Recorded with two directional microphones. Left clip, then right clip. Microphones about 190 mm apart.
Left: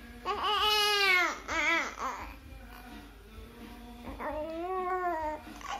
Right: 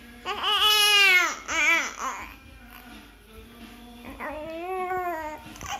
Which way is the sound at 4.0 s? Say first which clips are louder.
Right 2 dB; 10° right (ahead or behind).